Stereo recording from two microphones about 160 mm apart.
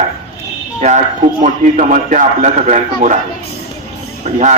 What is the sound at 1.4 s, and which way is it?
A man's voice, 55° right (ahead or behind).